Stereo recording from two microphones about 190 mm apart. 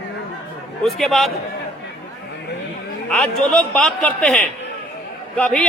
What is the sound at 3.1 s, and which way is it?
A man's voice, 5° left (ahead or behind).